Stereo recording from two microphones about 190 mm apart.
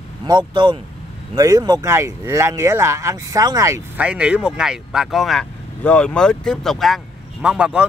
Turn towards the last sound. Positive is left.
turn(degrees=-5)  # may be behind; listen again after turning